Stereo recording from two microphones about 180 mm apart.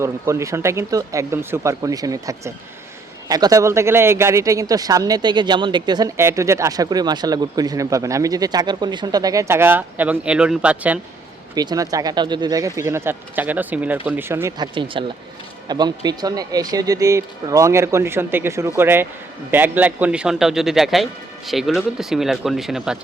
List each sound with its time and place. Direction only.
0.0 s speech: 15° right (ahead or behind)
11.5 s speech: 20° right (ahead or behind)
14.8 s a man's voice: 30° right (ahead or behind); by 23.0 s centre (ahead or behind)